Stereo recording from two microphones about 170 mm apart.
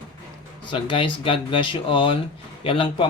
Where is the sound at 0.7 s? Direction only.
30° left (ahead or behind).